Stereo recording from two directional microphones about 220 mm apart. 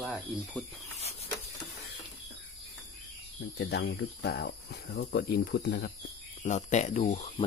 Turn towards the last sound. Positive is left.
turn(degrees=30)  # may be behind; listen again after turning